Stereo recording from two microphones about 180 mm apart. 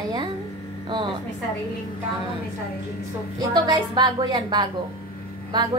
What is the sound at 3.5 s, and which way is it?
A woman's voice, 25° right (ahead or behind).